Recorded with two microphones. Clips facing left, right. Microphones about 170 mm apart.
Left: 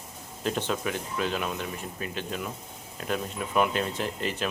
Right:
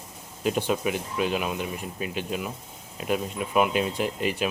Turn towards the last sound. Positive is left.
turn(degrees=-10)  # may be behind; listen again after turning